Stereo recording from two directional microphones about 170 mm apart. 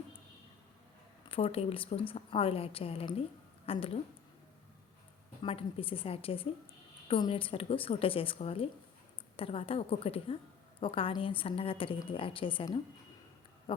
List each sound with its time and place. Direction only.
1.3 s a woman's voice: 35° left (ahead or behind)
5.4 s a woman's voice: 35° left (ahead or behind)
13.7 s a sound: 30° left (ahead or behind)